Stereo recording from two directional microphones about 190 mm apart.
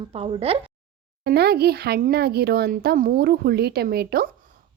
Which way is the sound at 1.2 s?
55° right (ahead or behind).